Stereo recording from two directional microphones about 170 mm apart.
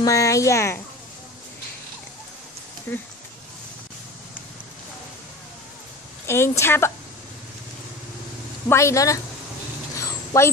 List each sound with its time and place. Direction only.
0.0 s speech: 20° left (ahead or behind)
2.9 s a woman's voice: 10° left (ahead or behind)
6.2 s a woman's voice: 15° left (ahead or behind)
8.6 s a woman's voice: 15° left (ahead or behind)
10.3 s a woman's voice: 20° left (ahead or behind)